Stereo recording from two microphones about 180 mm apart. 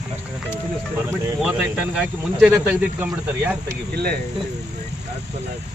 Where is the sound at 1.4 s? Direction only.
5° right (ahead or behind).